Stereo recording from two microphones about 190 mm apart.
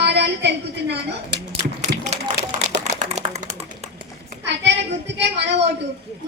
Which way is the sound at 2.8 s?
35° right (ahead or behind).